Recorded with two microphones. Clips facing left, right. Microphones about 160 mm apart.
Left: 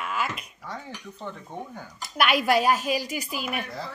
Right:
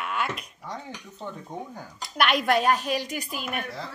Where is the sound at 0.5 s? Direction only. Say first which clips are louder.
Right 1 dB; 15° right (ahead or behind).